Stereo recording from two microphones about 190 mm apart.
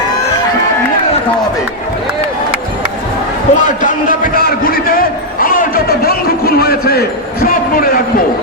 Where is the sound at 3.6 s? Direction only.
40° left (ahead or behind).